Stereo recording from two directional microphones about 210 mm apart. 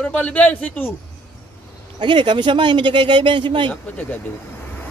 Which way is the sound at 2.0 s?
20° right (ahead or behind).